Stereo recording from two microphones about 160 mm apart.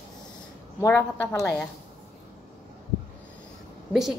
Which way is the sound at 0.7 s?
15° left (ahead or behind).